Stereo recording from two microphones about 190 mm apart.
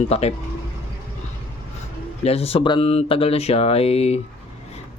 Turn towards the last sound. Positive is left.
turn(degrees=35)  # may be behind; listen again after turning